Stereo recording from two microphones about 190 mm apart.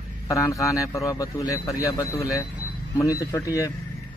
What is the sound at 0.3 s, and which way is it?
A man's voice, 15° left (ahead or behind).